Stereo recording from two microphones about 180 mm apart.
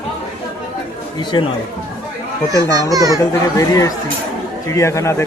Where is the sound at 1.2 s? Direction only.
25° left (ahead or behind).